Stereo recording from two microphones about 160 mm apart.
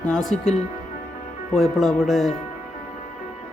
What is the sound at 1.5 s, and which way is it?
Speech, centre (ahead or behind).